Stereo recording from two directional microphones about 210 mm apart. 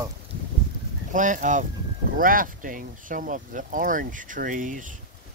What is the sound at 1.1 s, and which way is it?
Speech, 35° right (ahead or behind).